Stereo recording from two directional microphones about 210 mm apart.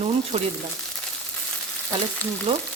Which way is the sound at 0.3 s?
35° right (ahead or behind).